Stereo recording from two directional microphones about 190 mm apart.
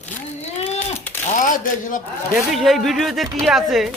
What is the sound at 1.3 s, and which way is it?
Speech, 45° left (ahead or behind).